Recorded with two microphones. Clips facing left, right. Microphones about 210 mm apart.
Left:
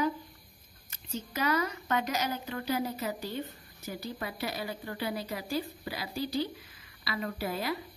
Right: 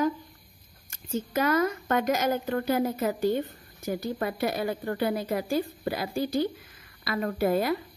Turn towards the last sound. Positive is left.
turn(degrees=-50)  # may be behind; listen again after turning